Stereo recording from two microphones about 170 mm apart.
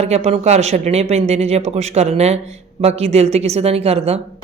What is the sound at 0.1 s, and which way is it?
Speech, 40° right (ahead or behind).